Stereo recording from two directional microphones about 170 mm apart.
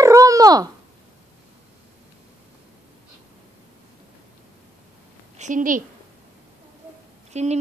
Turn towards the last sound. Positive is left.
turn(degrees=-40)  # may be behind; listen again after turning